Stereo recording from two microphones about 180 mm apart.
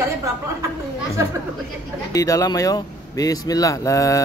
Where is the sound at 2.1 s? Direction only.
20° left (ahead or behind).